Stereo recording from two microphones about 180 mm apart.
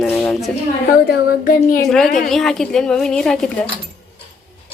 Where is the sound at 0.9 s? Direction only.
55° left (ahead or behind).